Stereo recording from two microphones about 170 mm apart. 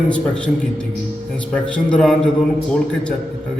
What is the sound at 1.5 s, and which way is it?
Speech, 5° left (ahead or behind).